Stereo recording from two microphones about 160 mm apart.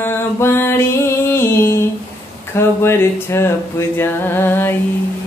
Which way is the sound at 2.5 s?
15° left (ahead or behind).